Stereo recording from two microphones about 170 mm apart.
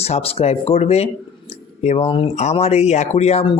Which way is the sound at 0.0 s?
35° left (ahead or behind).